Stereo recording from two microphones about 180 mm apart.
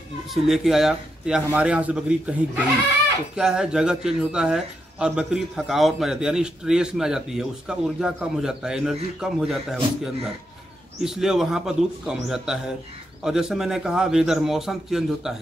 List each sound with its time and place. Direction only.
0.3 s a man's voice: centre (ahead or behind)
11.0 s a man's voice: centre (ahead or behind)